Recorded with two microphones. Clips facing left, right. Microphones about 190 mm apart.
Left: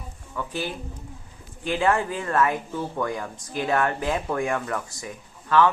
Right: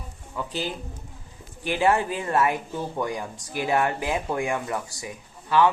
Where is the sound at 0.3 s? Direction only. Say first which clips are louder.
Even; 20° right (ahead or behind).